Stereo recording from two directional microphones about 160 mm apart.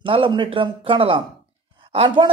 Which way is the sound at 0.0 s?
30° right (ahead or behind).